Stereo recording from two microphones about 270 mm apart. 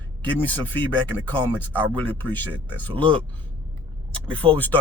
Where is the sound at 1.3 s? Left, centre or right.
Centre.